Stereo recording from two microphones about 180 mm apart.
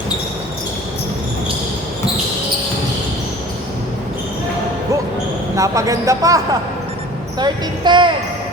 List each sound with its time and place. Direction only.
5.5 s a man's voice: 20° right (ahead or behind)